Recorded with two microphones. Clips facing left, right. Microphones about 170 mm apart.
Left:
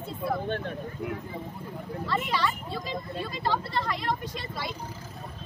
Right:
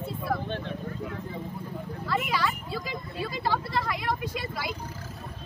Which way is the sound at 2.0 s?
10° right (ahead or behind).